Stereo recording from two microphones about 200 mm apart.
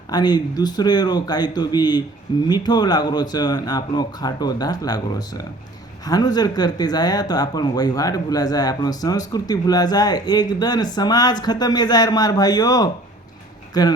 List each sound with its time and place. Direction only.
0.1 s speech: 20° left (ahead or behind)